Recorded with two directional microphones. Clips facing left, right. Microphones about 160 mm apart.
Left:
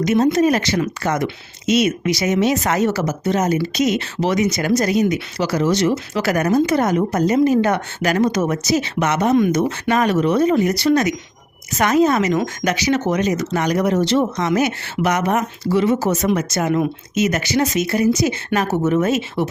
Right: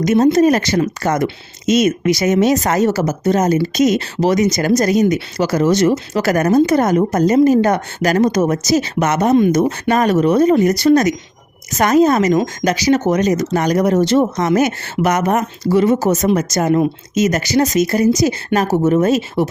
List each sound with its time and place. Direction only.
0.0 s speech: 45° right (ahead or behind)